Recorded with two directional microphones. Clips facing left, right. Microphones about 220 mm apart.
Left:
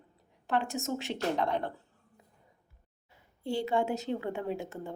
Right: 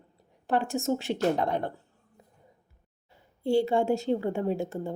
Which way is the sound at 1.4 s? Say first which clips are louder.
Right 2 dB; 45° right (ahead or behind).